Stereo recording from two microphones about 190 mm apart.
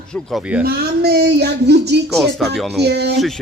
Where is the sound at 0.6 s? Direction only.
55° right (ahead or behind).